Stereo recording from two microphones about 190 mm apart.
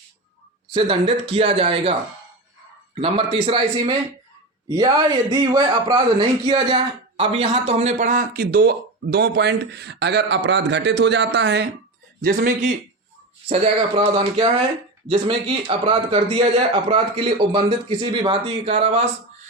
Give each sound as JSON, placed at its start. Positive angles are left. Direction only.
{"t": 0.7, "sound": "a man's voice", "side_deg": -30}
{"t": 12.2, "sound": "a man's voice", "side_deg": -55}
{"t": 13.5, "sound": "a man's voice", "side_deg": -30}